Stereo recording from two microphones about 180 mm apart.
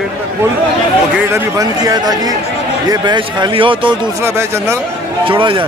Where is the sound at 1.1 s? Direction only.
15° right (ahead or behind).